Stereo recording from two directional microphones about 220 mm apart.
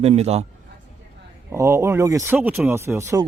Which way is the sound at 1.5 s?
10° right (ahead or behind).